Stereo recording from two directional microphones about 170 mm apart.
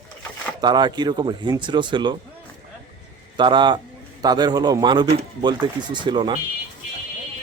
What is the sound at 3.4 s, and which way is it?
A man's voice, 25° right (ahead or behind).